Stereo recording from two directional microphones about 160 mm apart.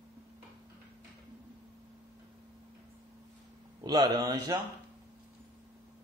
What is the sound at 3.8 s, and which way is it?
Speech, 25° right (ahead or behind).